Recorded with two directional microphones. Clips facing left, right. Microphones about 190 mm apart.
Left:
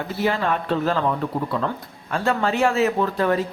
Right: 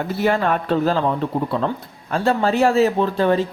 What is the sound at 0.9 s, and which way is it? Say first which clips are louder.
Speech: right 3 dB; 30° right (ahead or behind).